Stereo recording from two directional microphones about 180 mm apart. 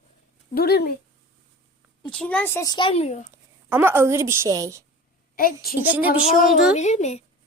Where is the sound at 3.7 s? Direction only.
10° right (ahead or behind).